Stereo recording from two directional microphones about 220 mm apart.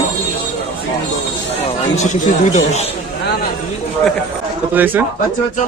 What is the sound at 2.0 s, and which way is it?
Speech, 35° left (ahead or behind).